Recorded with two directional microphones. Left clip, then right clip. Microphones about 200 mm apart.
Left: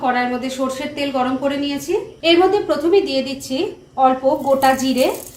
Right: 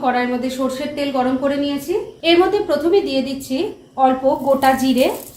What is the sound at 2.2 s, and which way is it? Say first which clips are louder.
A woman's voice: left 1 dB; 10° left (ahead or behind).